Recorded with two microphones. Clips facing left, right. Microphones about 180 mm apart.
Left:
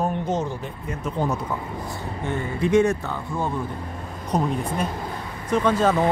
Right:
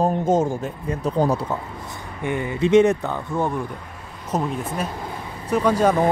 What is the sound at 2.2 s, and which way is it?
Speech, 15° right (ahead or behind).